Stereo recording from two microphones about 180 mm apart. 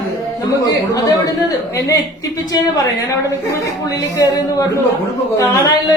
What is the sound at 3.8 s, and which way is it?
Speech, 20° left (ahead or behind).